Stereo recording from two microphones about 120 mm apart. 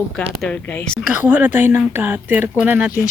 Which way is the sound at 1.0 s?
10° right (ahead or behind).